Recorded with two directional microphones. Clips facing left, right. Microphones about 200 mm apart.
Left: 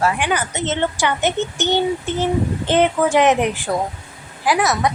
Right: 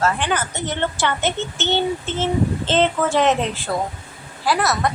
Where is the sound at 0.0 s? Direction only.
15° left (ahead or behind).